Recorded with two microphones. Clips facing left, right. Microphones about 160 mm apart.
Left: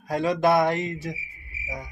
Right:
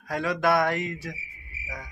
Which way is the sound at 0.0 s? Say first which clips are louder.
Left 3 dB; 25° left (ahead or behind).